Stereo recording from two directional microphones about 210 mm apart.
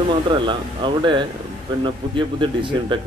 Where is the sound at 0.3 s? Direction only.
25° right (ahead or behind).